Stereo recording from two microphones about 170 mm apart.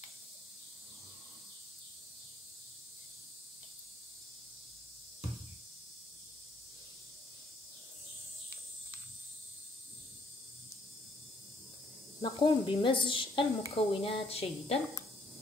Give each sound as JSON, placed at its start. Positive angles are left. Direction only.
{"t": 12.2, "sound": "speech", "side_deg": 30}